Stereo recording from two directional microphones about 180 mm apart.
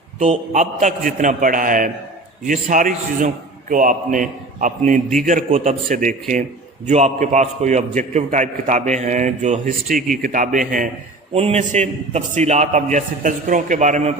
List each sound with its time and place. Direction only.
0.5 s a man's voice: 45° right (ahead or behind)
11.3 s a man's voice: 35° right (ahead or behind)